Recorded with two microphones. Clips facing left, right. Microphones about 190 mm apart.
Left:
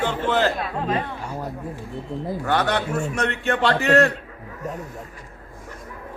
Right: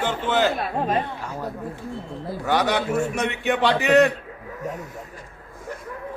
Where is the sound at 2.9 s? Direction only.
10° right (ahead or behind).